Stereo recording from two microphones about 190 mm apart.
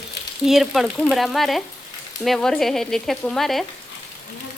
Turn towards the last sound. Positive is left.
turn(degrees=0)  # may be behind; listen again after turning